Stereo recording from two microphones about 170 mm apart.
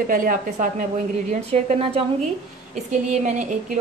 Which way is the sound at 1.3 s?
35° right (ahead or behind).